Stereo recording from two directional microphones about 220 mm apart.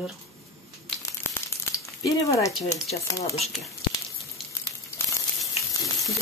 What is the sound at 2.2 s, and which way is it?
Speech, 15° left (ahead or behind).